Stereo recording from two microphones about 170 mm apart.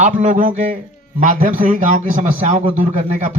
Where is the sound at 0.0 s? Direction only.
45° right (ahead or behind).